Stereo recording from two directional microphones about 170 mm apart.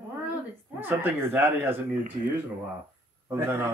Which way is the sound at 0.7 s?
10° right (ahead or behind).